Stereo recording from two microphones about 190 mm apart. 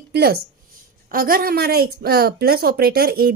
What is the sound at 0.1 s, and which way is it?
A woman's voice, 55° right (ahead or behind).